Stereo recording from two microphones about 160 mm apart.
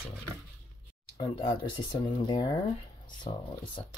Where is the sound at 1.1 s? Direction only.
30° left (ahead or behind).